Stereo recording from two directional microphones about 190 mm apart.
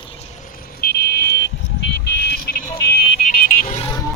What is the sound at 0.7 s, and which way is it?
Car alarm, 55° left (ahead or behind).